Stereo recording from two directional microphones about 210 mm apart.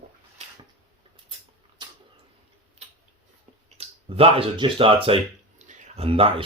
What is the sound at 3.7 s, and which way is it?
Speech, 30° right (ahead or behind).